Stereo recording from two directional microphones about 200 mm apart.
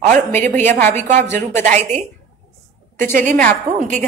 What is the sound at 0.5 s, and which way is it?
Speech, 35° right (ahead or behind).